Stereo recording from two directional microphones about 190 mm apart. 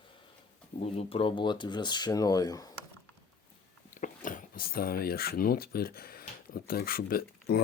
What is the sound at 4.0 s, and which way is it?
Speech, 45° left (ahead or behind).